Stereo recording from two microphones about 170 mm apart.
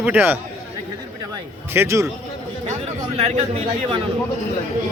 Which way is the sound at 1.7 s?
15° right (ahead or behind).